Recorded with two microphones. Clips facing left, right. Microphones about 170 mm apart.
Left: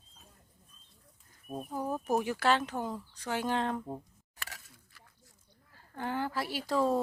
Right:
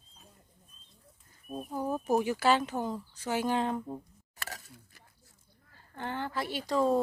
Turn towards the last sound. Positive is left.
turn(degrees=5)  # may be behind; listen again after turning